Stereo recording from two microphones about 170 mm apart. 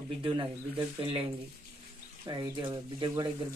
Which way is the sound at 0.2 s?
30° right (ahead or behind).